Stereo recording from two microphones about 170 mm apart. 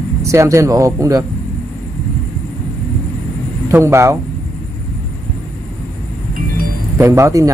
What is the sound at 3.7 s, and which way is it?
Speech, 15° right (ahead or behind).